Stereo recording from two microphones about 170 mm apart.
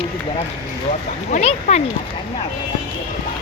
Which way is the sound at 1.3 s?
45° left (ahead or behind).